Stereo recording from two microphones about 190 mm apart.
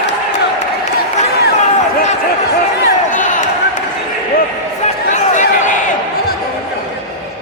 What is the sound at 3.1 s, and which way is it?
Basketball bounce, 40° left (ahead or behind).